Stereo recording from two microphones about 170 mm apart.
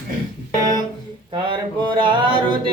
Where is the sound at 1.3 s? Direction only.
30° right (ahead or behind).